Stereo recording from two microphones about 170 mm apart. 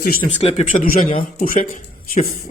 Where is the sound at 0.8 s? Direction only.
55° left (ahead or behind).